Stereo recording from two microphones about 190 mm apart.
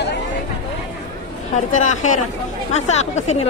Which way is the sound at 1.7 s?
40° left (ahead or behind).